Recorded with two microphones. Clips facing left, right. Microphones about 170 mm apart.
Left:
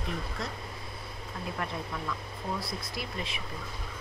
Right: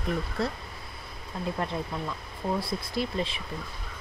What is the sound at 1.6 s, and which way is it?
A woman's voice, 30° right (ahead or behind).